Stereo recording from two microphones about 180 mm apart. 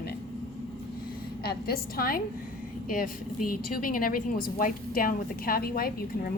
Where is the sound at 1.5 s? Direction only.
55° left (ahead or behind).